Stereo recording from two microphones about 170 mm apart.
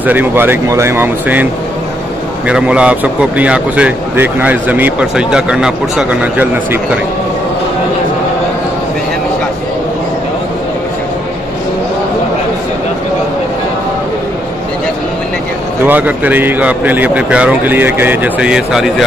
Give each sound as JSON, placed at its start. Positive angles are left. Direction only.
{"t": 0.0, "sound": "a man's voice", "side_deg": -10}
{"t": 15.8, "sound": "a man's voice", "side_deg": -10}